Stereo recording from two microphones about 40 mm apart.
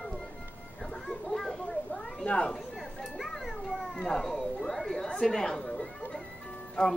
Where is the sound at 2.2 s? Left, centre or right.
Left.